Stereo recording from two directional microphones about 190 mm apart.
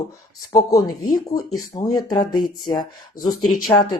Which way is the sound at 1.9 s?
20° left (ahead or behind).